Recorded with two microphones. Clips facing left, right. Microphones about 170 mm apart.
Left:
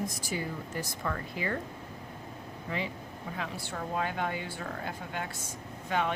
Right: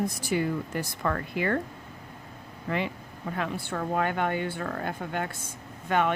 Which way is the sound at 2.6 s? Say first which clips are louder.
Right 6 dB; 65° right (ahead or behind).